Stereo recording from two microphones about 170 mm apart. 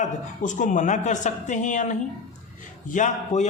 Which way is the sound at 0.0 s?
45° left (ahead or behind).